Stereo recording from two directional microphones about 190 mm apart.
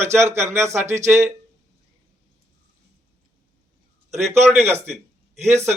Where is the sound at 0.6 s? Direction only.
15° right (ahead or behind).